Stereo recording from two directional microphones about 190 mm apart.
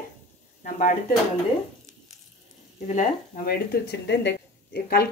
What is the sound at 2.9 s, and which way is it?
Speech, 50° left (ahead or behind).